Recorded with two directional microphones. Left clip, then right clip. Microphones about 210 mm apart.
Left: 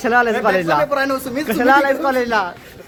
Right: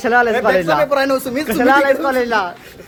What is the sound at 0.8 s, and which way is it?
Speech, 35° right (ahead or behind).